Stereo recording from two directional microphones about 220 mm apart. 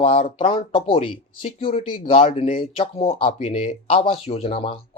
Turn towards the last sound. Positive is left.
turn(degrees=25)  # may be behind; listen again after turning